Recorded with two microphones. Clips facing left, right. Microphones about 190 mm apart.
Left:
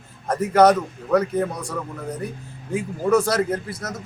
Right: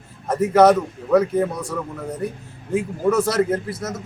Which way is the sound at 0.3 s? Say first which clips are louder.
Right 2 dB; 5° right (ahead or behind).